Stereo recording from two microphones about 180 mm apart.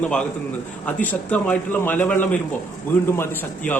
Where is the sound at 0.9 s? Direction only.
10° left (ahead or behind).